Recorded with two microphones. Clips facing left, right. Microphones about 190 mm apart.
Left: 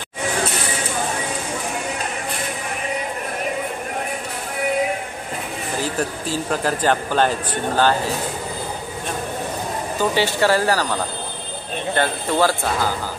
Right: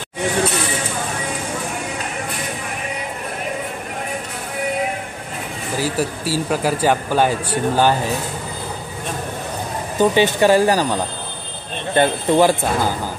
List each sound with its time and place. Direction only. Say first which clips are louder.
5.8 s speech: right 3 dB; 10° right (ahead or behind)
9.9 s speech: right 5 dB; 20° right (ahead or behind)